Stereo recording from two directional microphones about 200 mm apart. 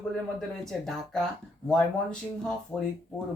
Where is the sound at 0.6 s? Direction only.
Centre (ahead or behind).